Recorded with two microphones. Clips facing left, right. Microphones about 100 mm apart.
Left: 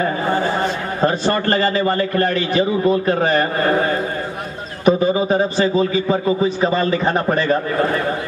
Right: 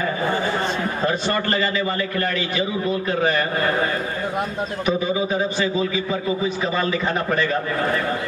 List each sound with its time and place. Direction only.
1.0 s a man's voice: 35° left (ahead or behind)
4.8 s a man's voice: 40° left (ahead or behind)